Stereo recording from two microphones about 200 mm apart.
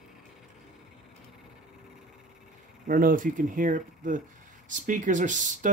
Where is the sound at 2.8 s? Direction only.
45° right (ahead or behind).